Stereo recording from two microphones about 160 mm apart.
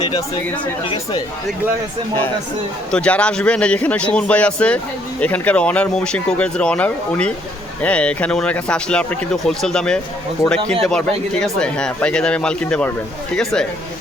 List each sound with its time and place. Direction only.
0.4 s speech: 10° left (ahead or behind)
2.9 s speech: 5° left (ahead or behind)
10.4 s speech: 20° left (ahead or behind)
10.8 s speech: 5° left (ahead or behind)